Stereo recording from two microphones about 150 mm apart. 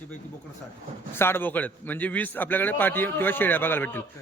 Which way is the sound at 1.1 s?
15° left (ahead or behind).